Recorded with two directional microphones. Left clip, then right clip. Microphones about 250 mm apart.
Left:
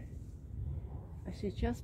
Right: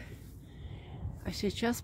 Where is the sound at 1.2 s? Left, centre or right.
Centre.